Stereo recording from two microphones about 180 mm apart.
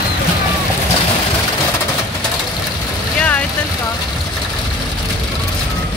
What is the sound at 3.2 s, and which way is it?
Vehicle, 5° left (ahead or behind).